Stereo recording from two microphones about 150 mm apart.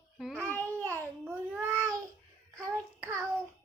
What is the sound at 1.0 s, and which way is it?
Babbling, 15° right (ahead or behind).